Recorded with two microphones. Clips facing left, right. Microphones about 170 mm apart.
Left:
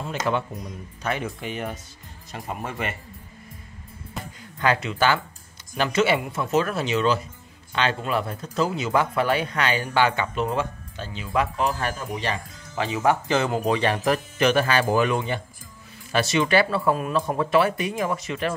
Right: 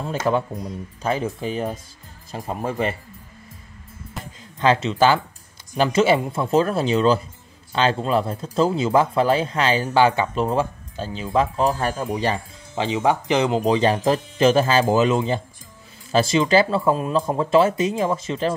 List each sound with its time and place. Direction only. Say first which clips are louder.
0.0 s speech: right 4 dB; 35° right (ahead or behind)
4.6 s speech: right 5 dB; 25° right (ahead or behind)